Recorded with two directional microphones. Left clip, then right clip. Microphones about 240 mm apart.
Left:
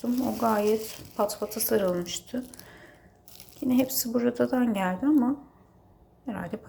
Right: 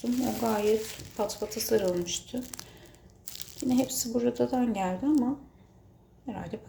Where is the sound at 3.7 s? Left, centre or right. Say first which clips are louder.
Left 2 dB; centre.